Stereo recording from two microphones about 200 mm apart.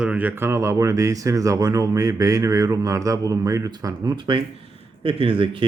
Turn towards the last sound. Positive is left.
turn(degrees=-25)  # may be behind; listen again after turning